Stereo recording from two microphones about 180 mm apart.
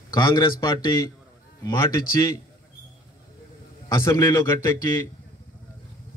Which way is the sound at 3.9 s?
15° left (ahead or behind).